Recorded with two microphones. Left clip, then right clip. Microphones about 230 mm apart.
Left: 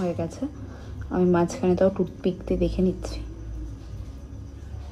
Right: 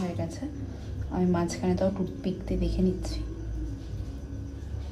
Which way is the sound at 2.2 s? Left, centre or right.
Left.